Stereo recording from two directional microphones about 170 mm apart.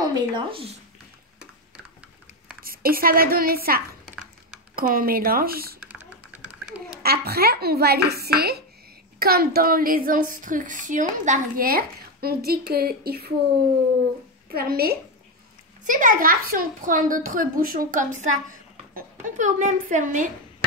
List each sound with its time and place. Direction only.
0.0 s speech: 25° right (ahead or behind)
2.6 s a woman's voice: 60° right (ahead or behind)
5.9 s typing: 10° right (ahead or behind)
7.0 s a child's voice: 65° right (ahead or behind)
14.5 s a woman's voice: 65° right (ahead or behind)
15.8 s a child's voice: 50° right (ahead or behind)